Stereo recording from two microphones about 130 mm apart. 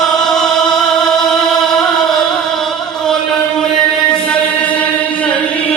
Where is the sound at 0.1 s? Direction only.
5° left (ahead or behind).